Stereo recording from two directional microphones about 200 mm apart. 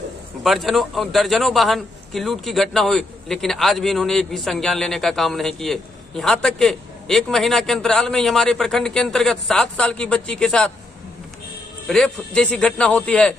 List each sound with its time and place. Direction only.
0.4 s a man's voice: centre (ahead or behind)
11.9 s a man's voice: 5° left (ahead or behind)